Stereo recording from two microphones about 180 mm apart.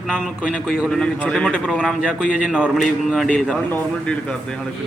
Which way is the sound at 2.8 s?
5° left (ahead or behind).